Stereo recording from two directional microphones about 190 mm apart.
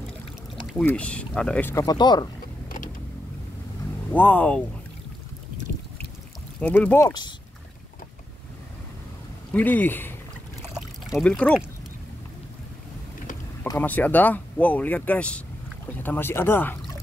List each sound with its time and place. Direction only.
0.7 s speech: 5° left (ahead or behind); by 2.2 s 20° left (ahead or behind)
4.1 s speech: 10° left (ahead or behind)
6.6 s speech: 10° left (ahead or behind)
7.1 s speech: 20° left (ahead or behind)
9.5 s speech: 10° left (ahead or behind)
10.7 s pour: centre (ahead or behind)
13.7 s speech: 10° left (ahead or behind)